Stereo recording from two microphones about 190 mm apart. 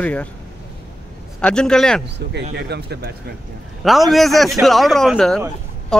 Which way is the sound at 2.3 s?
60° right (ahead or behind).